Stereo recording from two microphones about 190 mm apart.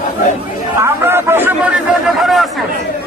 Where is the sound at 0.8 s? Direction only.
10° right (ahead or behind).